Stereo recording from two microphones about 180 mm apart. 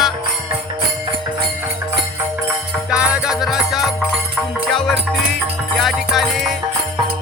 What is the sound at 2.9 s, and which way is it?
Music, 5° right (ahead or behind).